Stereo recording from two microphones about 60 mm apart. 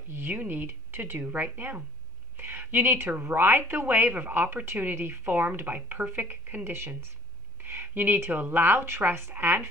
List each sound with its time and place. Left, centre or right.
0.1 s speech: right